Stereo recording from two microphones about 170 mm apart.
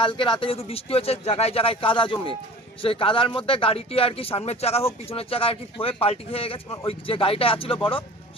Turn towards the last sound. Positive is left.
turn(degrees=30)  # may be behind; listen again after turning